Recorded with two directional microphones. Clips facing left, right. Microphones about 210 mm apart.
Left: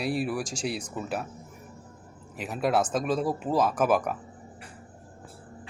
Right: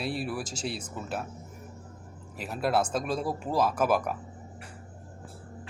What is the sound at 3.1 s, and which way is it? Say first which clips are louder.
Speech: left 3 dB; 5° left (ahead or behind).